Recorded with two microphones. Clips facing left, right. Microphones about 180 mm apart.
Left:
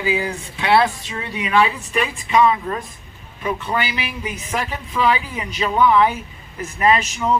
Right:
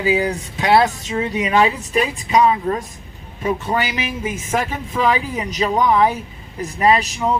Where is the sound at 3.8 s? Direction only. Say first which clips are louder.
Right 2 dB; 45° right (ahead or behind).